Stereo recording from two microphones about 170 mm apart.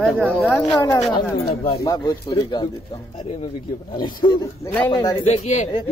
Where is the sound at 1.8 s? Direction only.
25° left (ahead or behind).